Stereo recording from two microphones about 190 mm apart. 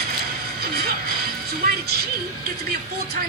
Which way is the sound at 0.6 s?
55° right (ahead or behind).